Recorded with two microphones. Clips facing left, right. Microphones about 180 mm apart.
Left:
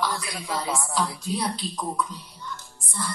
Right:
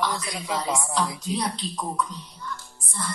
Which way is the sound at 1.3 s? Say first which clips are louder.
Even; centre (ahead or behind).